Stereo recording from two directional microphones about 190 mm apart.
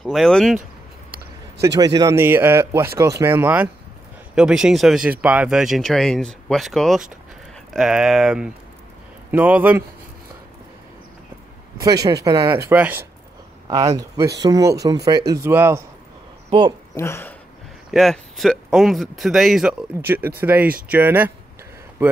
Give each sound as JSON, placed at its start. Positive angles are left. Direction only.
{"t": 0.0, "sound": "speech", "side_deg": 0}
{"t": 1.6, "sound": "speech", "side_deg": -20}
{"t": 11.8, "sound": "speech", "side_deg": -20}
{"t": 16.4, "sound": "speech", "side_deg": -25}
{"t": 16.9, "sound": "speech", "side_deg": 15}
{"t": 17.9, "sound": "speech", "side_deg": 0}